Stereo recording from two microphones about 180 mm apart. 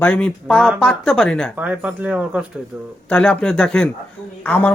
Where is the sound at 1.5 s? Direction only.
10° right (ahead or behind).